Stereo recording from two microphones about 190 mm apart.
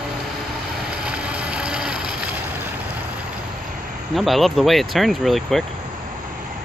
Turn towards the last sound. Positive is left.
turn(degrees=0)  # may be behind; listen again after turning